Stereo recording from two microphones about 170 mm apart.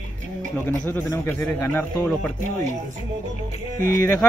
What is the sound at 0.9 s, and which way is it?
A man's voice, 15° left (ahead or behind).